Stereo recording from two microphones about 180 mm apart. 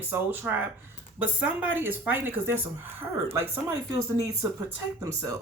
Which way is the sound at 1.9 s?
10° right (ahead or behind).